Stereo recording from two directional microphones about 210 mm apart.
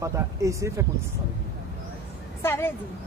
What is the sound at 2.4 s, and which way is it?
Speech, 10° left (ahead or behind).